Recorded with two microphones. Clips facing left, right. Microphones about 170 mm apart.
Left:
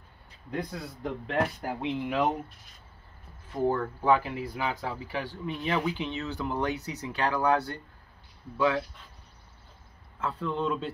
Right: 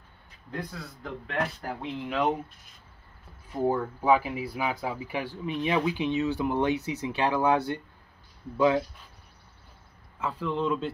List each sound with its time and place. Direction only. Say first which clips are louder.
0.5 s speech: left 3 dB; 15° left (ahead or behind)
3.6 s speech: right 1 dB; 10° right (ahead or behind)
10.2 s speech: right 1 dB; centre (ahead or behind)